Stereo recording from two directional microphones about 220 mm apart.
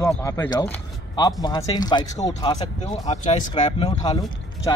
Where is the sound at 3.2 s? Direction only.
35° left (ahead or behind).